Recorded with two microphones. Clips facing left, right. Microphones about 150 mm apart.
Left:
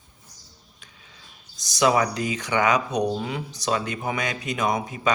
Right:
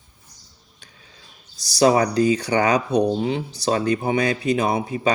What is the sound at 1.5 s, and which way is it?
Speech, 35° right (ahead or behind).